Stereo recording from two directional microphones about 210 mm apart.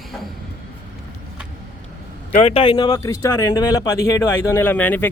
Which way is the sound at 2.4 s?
25° left (ahead or behind).